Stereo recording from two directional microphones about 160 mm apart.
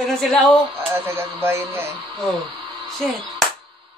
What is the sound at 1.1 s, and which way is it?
Speech, 15° right (ahead or behind).